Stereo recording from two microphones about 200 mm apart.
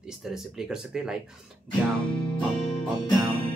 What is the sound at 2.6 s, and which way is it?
Music, 30° left (ahead or behind).